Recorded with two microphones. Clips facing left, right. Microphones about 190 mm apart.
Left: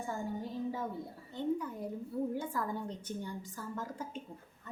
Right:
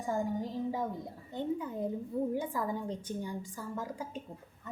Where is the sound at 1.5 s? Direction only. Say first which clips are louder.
Right 4 dB; 25° right (ahead or behind).